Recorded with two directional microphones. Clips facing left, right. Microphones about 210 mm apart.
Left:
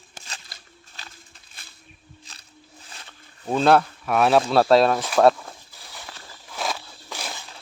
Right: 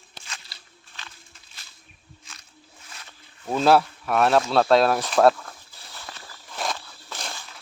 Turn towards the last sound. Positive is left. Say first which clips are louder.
# left 2 dB
turn(degrees=5)  # may be behind; listen again after turning